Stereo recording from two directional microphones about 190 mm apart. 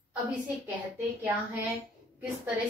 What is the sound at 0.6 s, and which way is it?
Speech, 10° right (ahead or behind).